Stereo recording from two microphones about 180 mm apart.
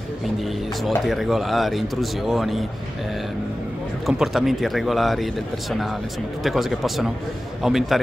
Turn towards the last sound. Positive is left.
turn(degrees=0)  # may be behind; listen again after turning